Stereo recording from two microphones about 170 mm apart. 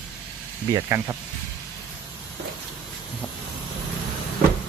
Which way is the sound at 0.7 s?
20° right (ahead or behind).